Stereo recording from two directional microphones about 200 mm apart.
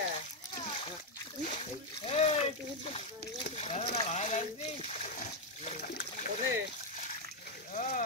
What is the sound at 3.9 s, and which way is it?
Splash, 35° left (ahead or behind).